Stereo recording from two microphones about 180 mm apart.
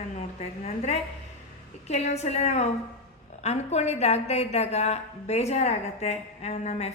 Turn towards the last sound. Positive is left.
turn(degrees=35)  # may be behind; listen again after turning